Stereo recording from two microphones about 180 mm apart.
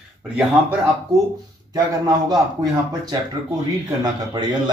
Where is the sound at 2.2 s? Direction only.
20° right (ahead or behind).